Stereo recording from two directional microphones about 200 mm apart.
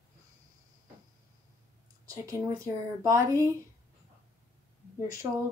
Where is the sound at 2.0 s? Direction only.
15° right (ahead or behind).